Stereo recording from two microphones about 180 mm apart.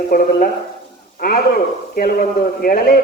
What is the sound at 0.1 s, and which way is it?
Speech, 55° left (ahead or behind).